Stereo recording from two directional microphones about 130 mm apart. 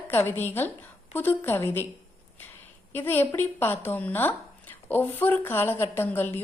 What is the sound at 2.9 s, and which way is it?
Speech, 15° left (ahead or behind).